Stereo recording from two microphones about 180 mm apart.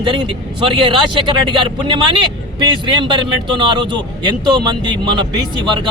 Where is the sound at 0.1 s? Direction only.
25° right (ahead or behind).